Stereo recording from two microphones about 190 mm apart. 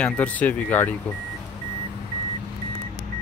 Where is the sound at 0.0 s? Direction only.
5° left (ahead or behind).